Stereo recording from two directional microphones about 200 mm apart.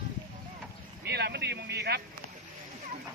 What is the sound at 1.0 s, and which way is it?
Speech, 55° right (ahead or behind).